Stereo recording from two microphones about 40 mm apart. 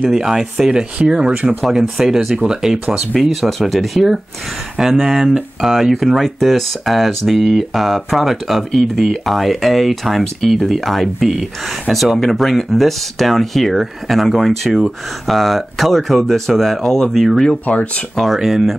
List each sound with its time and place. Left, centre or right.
0.1 s speech: centre
1.7 s speech: centre
3.2 s speech: centre
11.1 s speech: centre
11.9 s speech: right
12.2 s speech: centre
17.6 s speech: left
18.1 s speech: centre